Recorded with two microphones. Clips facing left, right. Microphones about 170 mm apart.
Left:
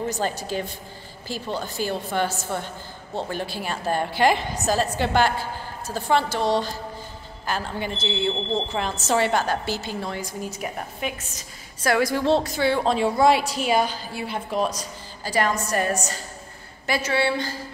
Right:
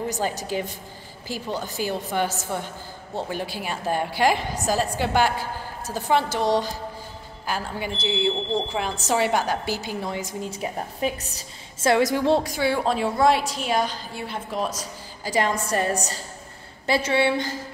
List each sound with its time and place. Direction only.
0.1 s a woman's voice: 15° right (ahead or behind)
15.2 s a woman's voice: 20° right (ahead or behind)